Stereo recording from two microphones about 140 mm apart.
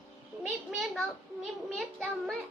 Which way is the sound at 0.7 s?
Centre (ahead or behind).